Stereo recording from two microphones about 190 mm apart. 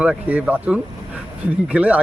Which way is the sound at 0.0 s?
5° right (ahead or behind).